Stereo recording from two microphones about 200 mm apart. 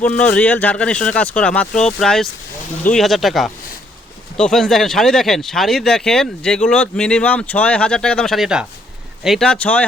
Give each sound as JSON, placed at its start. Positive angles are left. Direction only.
{"t": 0.0, "sound": "speech", "side_deg": 5}